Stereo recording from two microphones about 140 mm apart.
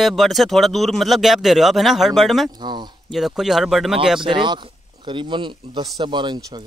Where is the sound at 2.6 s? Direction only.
30° right (ahead or behind).